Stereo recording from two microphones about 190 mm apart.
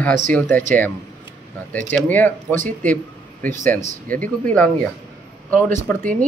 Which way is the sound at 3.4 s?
40° right (ahead or behind).